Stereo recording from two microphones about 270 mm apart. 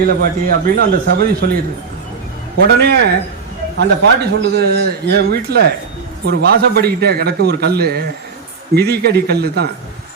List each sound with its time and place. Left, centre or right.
0.0 s a man's voice: right
2.6 s a man's voice: right